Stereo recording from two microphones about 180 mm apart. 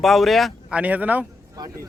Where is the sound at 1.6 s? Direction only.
20° right (ahead or behind).